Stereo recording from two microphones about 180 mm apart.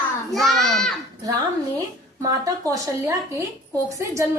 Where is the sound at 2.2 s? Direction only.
20° right (ahead or behind).